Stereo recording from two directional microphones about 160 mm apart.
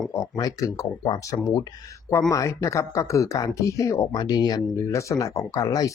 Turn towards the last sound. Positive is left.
turn(degrees=25)  # may be behind; listen again after turning